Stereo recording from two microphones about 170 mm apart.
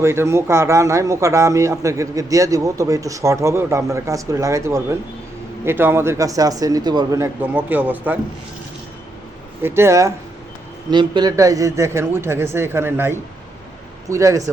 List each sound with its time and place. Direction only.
0.0 s a man's voice: 15° right (ahead or behind)
7.5 s a man's voice: 10° right (ahead or behind)
9.6 s a man's voice: 15° right (ahead or behind)